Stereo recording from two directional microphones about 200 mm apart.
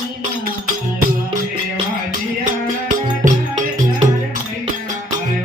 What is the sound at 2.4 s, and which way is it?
Music, 40° right (ahead or behind).